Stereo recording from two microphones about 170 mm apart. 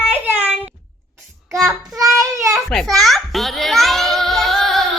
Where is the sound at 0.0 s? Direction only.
10° right (ahead or behind).